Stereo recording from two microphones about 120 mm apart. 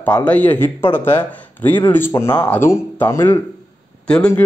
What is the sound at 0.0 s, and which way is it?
Speech, 10° left (ahead or behind).